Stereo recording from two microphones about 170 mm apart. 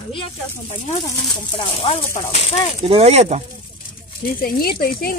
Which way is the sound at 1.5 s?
30° left (ahead or behind).